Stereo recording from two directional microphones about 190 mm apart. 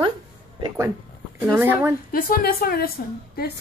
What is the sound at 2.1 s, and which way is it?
A woman's voice, 50° left (ahead or behind).